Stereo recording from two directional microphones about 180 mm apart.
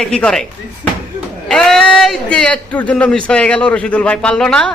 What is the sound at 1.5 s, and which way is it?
A man's voice, 5° left (ahead or behind).